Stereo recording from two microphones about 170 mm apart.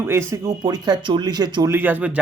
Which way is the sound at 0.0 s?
15° right (ahead or behind).